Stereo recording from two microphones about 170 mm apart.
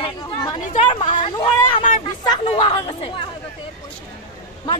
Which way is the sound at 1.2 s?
30° left (ahead or behind).